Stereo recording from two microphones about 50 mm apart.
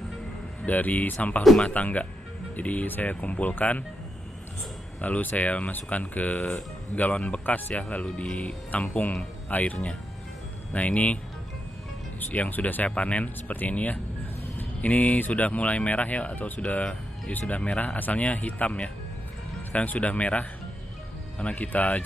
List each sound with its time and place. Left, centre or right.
0.7 s speech: left
5.0 s speech: left
12.2 s speech: left
12.9 s speech: left
17.6 s speech: left